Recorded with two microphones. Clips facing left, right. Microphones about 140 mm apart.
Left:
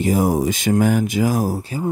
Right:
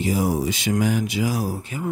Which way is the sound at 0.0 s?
50° left (ahead or behind).